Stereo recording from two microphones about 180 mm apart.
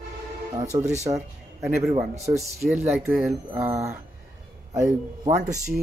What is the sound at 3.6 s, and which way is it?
Speech, 15° right (ahead or behind).